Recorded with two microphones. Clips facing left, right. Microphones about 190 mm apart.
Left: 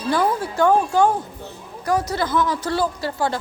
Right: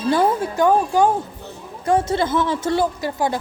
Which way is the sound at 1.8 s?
25° right (ahead or behind).